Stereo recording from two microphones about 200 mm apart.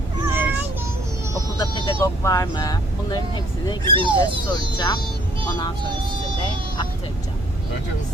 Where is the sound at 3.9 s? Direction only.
25° right (ahead or behind).